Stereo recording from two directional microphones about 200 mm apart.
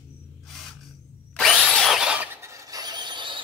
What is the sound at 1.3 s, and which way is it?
Drill, 5° left (ahead or behind).